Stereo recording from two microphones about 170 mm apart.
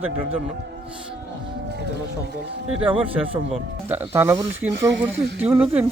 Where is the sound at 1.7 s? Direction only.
80° right.